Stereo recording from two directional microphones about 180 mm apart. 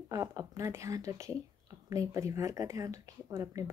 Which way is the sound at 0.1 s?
20° right (ahead or behind).